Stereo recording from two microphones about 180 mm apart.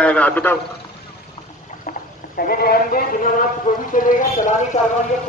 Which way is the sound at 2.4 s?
55° left (ahead or behind).